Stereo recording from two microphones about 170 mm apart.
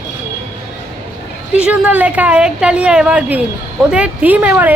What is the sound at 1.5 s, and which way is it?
A woman's voice, 5° right (ahead or behind).